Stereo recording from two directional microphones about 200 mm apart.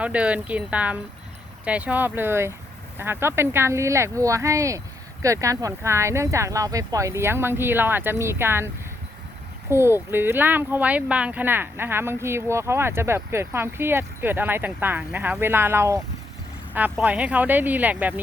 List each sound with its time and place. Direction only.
0.0 s speech: 5° right (ahead or behind)